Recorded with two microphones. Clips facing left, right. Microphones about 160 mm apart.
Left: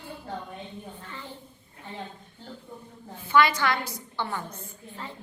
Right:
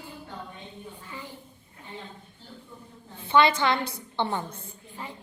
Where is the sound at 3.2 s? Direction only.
25° right (ahead or behind).